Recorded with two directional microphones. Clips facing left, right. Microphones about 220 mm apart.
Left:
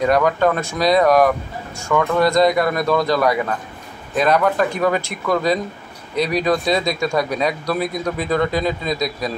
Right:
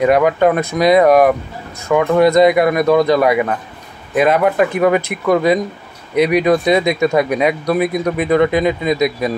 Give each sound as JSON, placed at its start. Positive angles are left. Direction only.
{"t": 0.0, "sound": "speech", "side_deg": -10}